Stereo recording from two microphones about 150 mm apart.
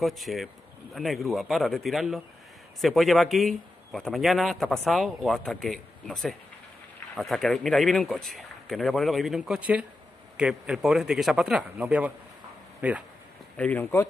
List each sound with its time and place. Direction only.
0.0 s speech: centre (ahead or behind)
13.6 s speech: 10° left (ahead or behind)